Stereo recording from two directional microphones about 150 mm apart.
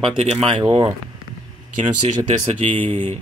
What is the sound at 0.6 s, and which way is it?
Speech, 30° right (ahead or behind).